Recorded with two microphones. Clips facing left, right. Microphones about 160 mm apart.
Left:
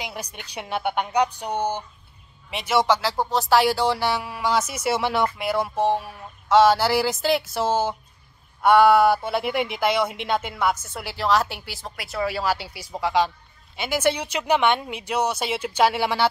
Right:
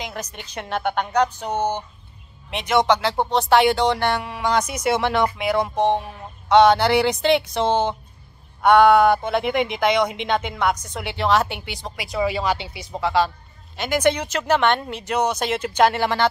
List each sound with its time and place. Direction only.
0.0 s speech: 10° left (ahead or behind)